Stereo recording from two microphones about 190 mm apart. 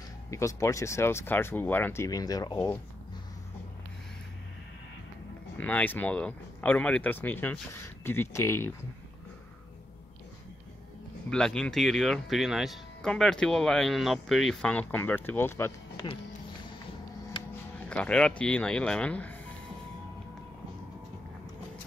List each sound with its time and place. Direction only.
0.3 s speech: 15° left (ahead or behind)
5.6 s speech: 10° left (ahead or behind)
11.2 s speech: 5° left (ahead or behind)
17.8 s speech: 5° left (ahead or behind)